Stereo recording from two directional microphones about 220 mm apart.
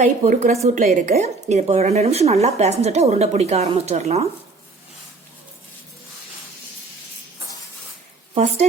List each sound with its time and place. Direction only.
0.0 s a woman's voice: 30° right (ahead or behind)
8.4 s speech: 30° right (ahead or behind)